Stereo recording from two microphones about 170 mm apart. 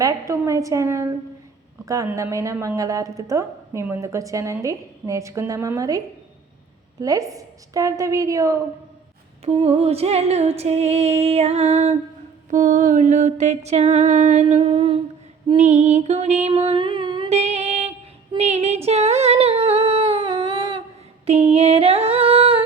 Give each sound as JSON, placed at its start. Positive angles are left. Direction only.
{"t": 0.0, "sound": "a woman's voice", "side_deg": -20}
{"t": 7.0, "sound": "a woman's voice", "side_deg": -20}
{"t": 9.4, "sound": "female singing", "side_deg": -35}
{"t": 12.5, "sound": "mantra", "side_deg": -45}
{"t": 15.5, "sound": "music", "side_deg": -40}
{"t": 17.3, "sound": "music", "side_deg": -40}
{"t": 18.3, "sound": "humming", "side_deg": -40}
{"t": 21.2, "sound": "female singing", "side_deg": -40}